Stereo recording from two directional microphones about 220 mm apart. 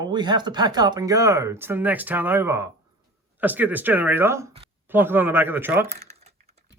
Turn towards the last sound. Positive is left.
turn(degrees=-10)  # may be behind; listen again after turning